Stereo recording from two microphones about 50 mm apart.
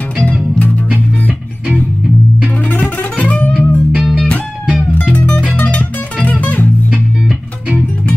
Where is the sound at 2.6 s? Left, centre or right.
Left.